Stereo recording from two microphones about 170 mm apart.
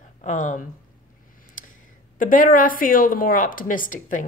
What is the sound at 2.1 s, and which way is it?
A woman's voice, 55° left (ahead or behind).